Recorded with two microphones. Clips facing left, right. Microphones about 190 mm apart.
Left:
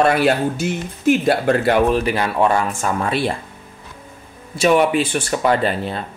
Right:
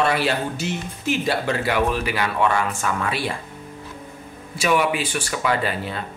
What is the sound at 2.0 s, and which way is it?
Speech, 35° left (ahead or behind).